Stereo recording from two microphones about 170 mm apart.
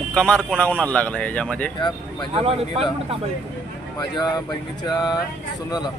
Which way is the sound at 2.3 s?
35° right (ahead or behind).